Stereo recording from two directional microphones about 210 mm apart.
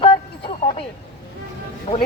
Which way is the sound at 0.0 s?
25° left (ahead or behind).